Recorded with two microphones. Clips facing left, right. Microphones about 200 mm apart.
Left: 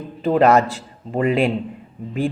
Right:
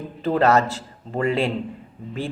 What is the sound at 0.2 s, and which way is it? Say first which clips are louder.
Speech: left 3 dB; 15° left (ahead or behind).